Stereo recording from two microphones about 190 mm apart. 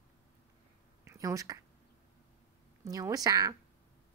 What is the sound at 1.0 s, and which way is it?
Speech, 15° right (ahead or behind).